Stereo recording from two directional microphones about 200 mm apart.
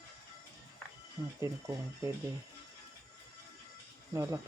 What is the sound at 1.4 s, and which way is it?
Speech, 15° right (ahead or behind).